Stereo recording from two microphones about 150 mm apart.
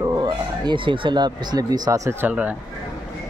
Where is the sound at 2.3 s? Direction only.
10° right (ahead or behind).